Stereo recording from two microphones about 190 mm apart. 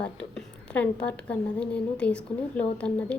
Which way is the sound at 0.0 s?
5° left (ahead or behind).